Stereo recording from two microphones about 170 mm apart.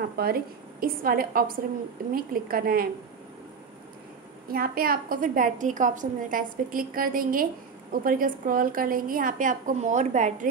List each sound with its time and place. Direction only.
0.2 s a woman's voice: 60° right (ahead or behind)
4.5 s a woman's voice: 60° right (ahead or behind); by 10.3 s 45° right (ahead or behind)